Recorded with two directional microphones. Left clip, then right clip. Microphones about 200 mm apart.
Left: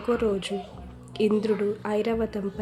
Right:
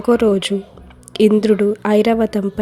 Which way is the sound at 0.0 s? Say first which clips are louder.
Right 11 dB; 40° right (ahead or behind).